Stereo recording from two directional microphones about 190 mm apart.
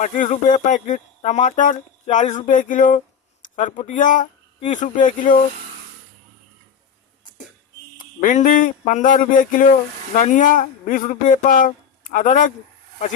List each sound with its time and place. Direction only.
0.0 s speech: 40° left (ahead or behind)
7.9 s speech: 40° left (ahead or behind)